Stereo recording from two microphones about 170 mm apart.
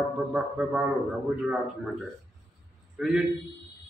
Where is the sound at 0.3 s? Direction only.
5° right (ahead or behind).